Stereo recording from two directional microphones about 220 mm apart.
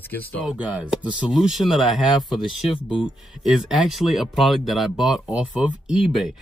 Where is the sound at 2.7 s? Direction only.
20° left (ahead or behind).